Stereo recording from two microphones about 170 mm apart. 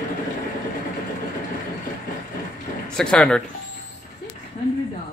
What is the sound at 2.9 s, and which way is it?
Speech, 5° left (ahead or behind).